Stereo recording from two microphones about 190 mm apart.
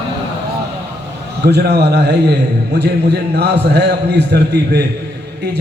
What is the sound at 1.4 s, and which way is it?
A man's voice, 60° right (ahead or behind).